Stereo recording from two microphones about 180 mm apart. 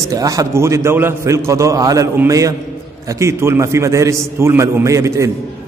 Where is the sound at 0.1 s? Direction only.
20° right (ahead or behind).